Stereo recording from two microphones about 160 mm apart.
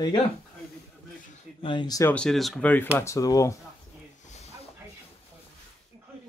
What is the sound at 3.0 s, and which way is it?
Speech, 20° left (ahead or behind).